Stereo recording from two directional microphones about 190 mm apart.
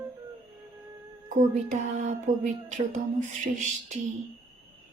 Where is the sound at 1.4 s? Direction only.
40° right (ahead or behind).